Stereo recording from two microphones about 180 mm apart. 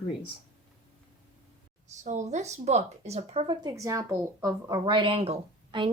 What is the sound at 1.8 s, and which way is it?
A woman's voice, 40° right (ahead or behind).